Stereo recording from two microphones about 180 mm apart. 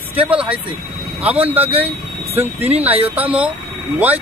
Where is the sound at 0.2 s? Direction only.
5° right (ahead or behind).